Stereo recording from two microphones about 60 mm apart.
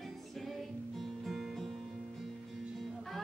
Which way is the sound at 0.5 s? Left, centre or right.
Centre.